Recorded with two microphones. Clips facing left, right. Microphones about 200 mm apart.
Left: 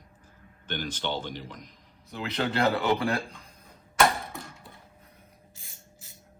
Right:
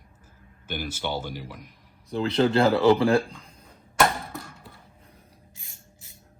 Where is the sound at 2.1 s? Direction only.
30° right (ahead or behind).